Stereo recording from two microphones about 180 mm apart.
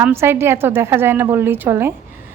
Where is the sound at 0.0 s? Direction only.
15° right (ahead or behind).